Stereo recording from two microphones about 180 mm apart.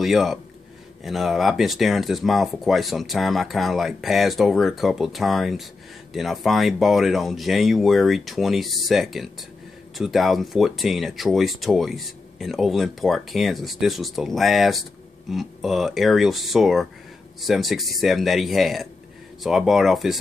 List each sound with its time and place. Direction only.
0.0 s speech: centre (ahead or behind)